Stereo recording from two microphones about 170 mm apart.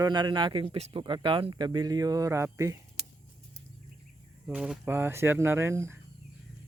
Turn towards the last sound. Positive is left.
turn(degrees=-15)  # may be behind; listen again after turning